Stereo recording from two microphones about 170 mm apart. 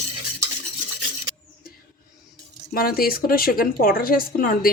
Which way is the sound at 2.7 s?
60° left (ahead or behind).